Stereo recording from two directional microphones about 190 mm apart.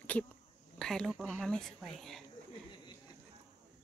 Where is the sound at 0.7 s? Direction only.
Centre (ahead or behind).